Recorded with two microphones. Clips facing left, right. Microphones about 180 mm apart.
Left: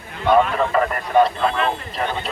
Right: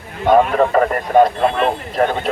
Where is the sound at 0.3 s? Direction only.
40° right (ahead or behind).